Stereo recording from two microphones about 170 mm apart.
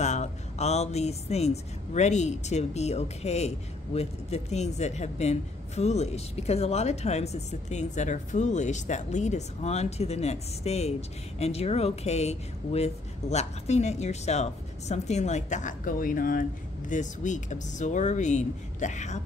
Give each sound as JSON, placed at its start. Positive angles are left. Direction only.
{"t": 0.0, "sound": "speech", "side_deg": 40}